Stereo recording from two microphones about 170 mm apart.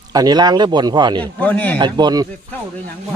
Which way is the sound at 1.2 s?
10° left (ahead or behind).